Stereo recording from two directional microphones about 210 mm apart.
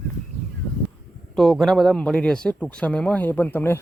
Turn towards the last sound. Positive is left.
turn(degrees=10)  # may be behind; listen again after turning